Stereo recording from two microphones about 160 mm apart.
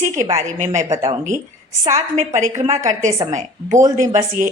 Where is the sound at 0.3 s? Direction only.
50° right (ahead or behind).